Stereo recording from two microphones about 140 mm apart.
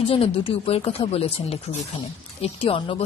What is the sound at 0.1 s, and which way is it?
Speech, 40° left (ahead or behind).